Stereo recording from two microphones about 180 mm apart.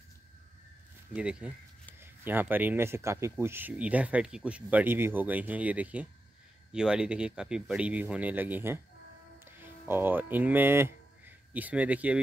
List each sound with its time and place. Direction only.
1.1 s speech: 5° right (ahead or behind)